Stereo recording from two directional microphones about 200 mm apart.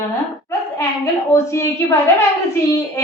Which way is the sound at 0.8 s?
15° left (ahead or behind).